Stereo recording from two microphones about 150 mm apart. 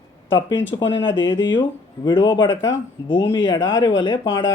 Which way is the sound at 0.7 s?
25° left (ahead or behind).